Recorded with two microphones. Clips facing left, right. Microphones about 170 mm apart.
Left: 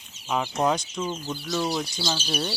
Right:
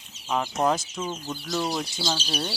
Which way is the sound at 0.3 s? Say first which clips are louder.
Even; centre (ahead or behind).